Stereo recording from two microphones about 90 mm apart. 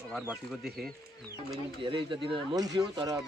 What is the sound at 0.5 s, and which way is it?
Speech, centre (ahead or behind).